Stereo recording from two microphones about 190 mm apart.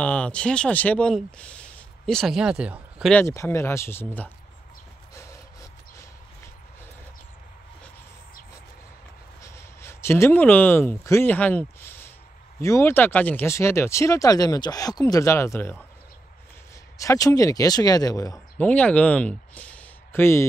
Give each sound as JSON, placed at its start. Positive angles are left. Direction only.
{"t": 0.0, "sound": "speech", "side_deg": 5}
{"t": 3.1, "sound": "speech", "side_deg": 10}
{"t": 5.1, "sound": "a sound", "side_deg": 15}
{"t": 9.4, "sound": "speech", "side_deg": 15}
{"t": 17.0, "sound": "speech", "side_deg": 15}
{"t": 18.6, "sound": "speech", "side_deg": 5}